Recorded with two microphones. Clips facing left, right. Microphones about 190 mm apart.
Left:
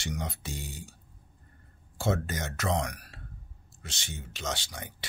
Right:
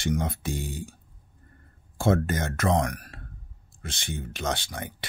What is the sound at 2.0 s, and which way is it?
Speech, 55° right (ahead or behind).